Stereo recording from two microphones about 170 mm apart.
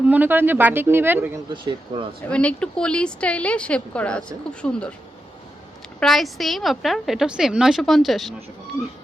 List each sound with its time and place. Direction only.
0.1 s speech: 10° right (ahead or behind)
1.6 s speech: 30° right (ahead or behind)
2.3 s a woman's voice: 5° left (ahead or behind)
6.0 s a woman's voice: centre (ahead or behind)